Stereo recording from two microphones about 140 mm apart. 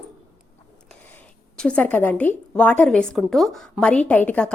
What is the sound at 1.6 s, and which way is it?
A woman's voice, 10° left (ahead or behind).